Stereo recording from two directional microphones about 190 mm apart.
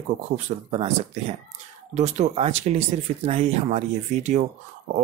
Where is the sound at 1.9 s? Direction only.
35° right (ahead or behind).